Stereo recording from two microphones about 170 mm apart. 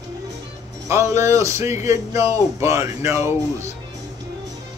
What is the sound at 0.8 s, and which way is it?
Speech, 15° right (ahead or behind).